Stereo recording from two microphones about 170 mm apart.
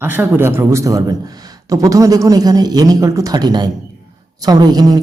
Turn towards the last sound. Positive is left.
turn(degrees=-25)  # may be behind; listen again after turning